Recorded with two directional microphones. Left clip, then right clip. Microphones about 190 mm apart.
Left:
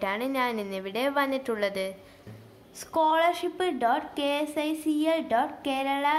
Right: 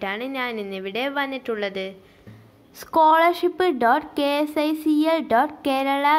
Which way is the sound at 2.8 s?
30° right (ahead or behind).